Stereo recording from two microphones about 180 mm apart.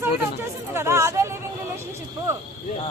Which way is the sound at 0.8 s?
15° right (ahead or behind).